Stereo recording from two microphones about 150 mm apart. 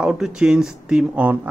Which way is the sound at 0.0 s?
5° right (ahead or behind).